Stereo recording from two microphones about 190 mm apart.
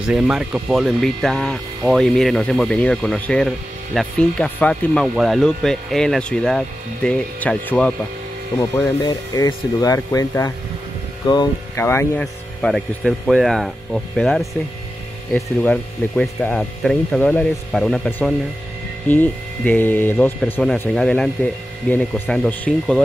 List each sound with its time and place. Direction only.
0.0 s speech: 5° right (ahead or behind)
9.0 s speech: 20° left (ahead or behind); by 23.0 s 5° left (ahead or behind)